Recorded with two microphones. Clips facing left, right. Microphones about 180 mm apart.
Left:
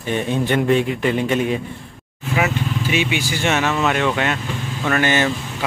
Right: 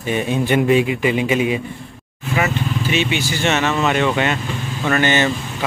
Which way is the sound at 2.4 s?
10° left (ahead or behind).